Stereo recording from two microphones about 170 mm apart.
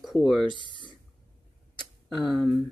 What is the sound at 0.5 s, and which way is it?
Speech, 25° left (ahead or behind).